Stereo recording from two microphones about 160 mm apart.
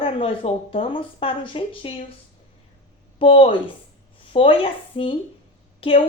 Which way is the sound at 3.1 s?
35° left (ahead or behind).